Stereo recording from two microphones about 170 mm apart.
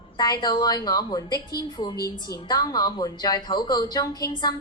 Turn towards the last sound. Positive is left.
turn(degrees=20)  # may be behind; listen again after turning